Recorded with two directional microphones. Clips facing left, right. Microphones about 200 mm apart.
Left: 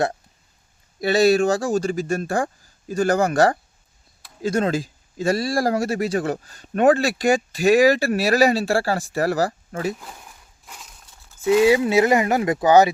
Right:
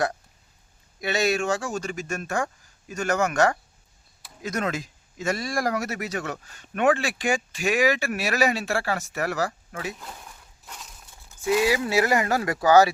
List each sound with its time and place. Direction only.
1.0 s speech: 35° left (ahead or behind)
11.4 s speech: 25° left (ahead or behind)